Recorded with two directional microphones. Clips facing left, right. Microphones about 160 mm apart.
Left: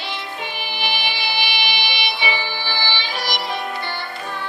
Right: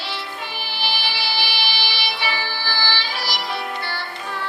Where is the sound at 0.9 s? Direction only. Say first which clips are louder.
Left 1 dB; 20° left (ahead or behind).